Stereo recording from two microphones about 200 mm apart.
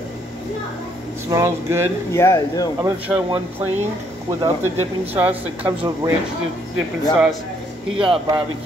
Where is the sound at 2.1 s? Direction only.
15° left (ahead or behind).